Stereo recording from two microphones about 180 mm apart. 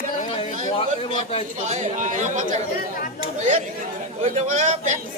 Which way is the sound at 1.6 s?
40° right (ahead or behind).